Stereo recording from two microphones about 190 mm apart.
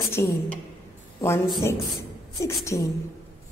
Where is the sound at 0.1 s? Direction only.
15° left (ahead or behind).